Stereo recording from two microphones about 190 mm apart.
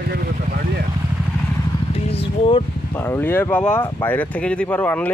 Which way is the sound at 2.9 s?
10° left (ahead or behind).